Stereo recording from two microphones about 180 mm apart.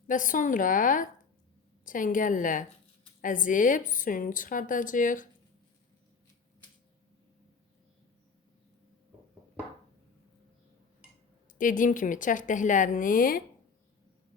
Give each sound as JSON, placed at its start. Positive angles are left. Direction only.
{"t": 0.1, "sound": "a woman's voice", "side_deg": 45}
{"t": 11.5, "sound": "a woman's voice", "side_deg": 50}